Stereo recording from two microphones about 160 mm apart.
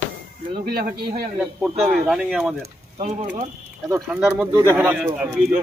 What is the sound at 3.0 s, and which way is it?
Speech, 40° right (ahead or behind).